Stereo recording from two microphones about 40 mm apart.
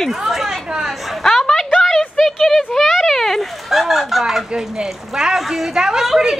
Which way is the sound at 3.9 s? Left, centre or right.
Centre.